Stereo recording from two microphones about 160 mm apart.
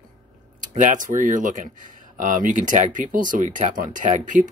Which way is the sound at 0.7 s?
55° right (ahead or behind).